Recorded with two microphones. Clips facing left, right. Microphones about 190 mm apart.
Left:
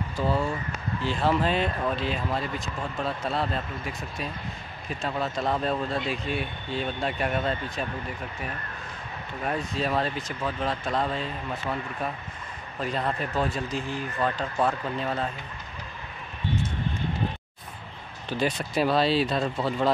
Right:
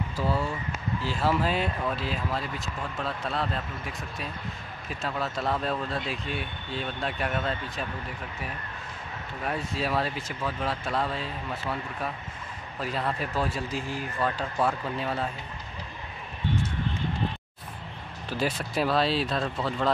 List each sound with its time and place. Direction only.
0.2 s speech: 5° right (ahead or behind)
9.4 s speech: 5° right (ahead or behind)
11.6 s speech: 20° left (ahead or behind)
12.8 s speech: 5° right (ahead or behind)
18.3 s speech: 5° right (ahead or behind)